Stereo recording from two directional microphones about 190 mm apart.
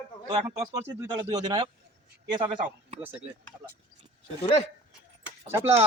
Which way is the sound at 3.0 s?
10° right (ahead or behind).